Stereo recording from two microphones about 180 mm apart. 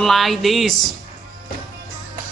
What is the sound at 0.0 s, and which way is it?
Speech, centre (ahead or behind).